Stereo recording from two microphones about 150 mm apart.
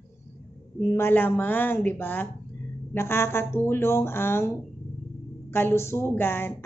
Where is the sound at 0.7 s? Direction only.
15° left (ahead or behind).